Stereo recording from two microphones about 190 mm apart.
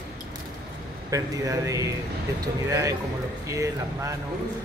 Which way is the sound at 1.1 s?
15° right (ahead or behind).